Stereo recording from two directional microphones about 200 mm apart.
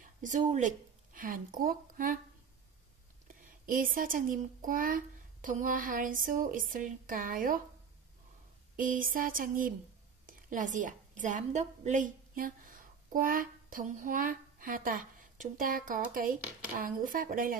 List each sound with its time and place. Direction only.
0.0 s speech: 40° right (ahead or behind)
3.4 s speech: 45° right (ahead or behind)
8.7 s a woman's voice: 45° right (ahead or behind)